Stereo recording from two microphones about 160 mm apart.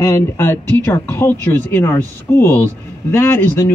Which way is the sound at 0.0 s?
20° left (ahead or behind).